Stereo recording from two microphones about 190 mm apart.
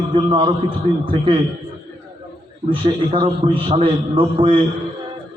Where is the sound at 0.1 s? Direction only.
25° right (ahead or behind).